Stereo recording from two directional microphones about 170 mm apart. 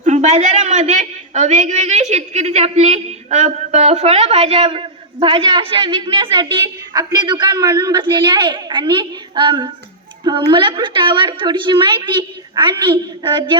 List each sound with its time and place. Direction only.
0.0 s a woman's voice: 45° right (ahead or behind)